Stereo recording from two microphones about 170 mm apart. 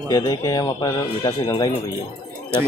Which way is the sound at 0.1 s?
20° left (ahead or behind).